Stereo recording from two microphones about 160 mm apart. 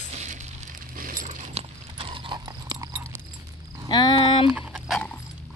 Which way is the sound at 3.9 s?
30° left (ahead or behind).